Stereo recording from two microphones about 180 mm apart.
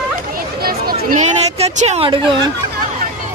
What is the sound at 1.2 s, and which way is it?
Speech, 35° right (ahead or behind).